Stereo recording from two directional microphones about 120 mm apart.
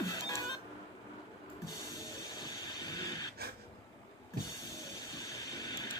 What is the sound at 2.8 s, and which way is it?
Printer, 35° left (ahead or behind).